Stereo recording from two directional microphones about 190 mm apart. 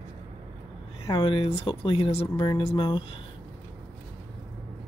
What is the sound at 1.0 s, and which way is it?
Speech, 25° left (ahead or behind).